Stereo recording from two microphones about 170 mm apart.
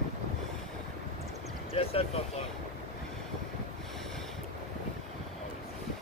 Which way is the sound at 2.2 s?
35° left (ahead or behind).